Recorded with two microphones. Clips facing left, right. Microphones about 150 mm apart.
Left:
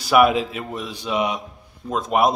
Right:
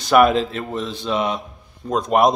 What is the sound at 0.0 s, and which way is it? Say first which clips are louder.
A man's voice: right 2 dB; 5° left (ahead or behind).